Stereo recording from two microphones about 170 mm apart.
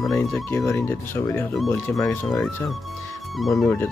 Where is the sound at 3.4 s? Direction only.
Centre (ahead or behind).